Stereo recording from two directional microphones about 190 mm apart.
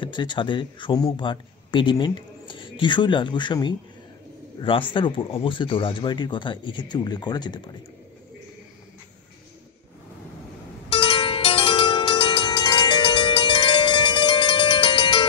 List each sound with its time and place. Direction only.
0.0 s a man's voice: 25° left (ahead or behind)
10.9 s music: 25° left (ahead or behind)